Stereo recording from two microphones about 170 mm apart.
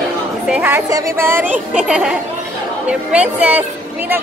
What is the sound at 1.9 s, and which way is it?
A woman's voice, 5° right (ahead or behind).